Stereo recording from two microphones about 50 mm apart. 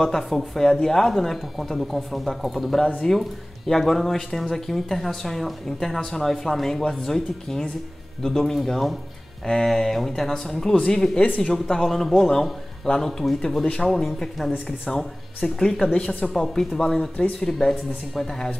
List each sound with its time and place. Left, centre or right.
0.0 s speech: centre
13.2 s speech: centre